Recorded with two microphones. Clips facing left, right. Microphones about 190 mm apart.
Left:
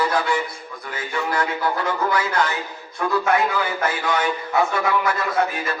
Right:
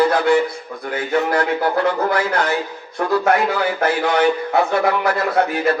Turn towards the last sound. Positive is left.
turn(degrees=-60)  # may be behind; listen again after turning